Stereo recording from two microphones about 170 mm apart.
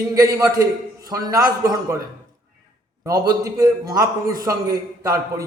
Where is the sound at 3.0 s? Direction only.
20° right (ahead or behind).